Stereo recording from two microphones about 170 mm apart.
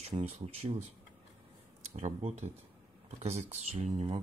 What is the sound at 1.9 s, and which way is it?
Speech, 40° right (ahead or behind).